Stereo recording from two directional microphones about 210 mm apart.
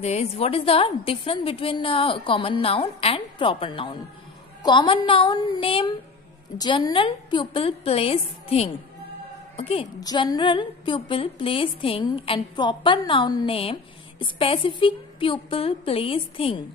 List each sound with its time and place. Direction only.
0.0 s a woman's voice: 30° left (ahead or behind)